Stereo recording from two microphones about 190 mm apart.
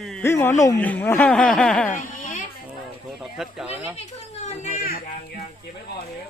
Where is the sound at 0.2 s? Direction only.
10° left (ahead or behind).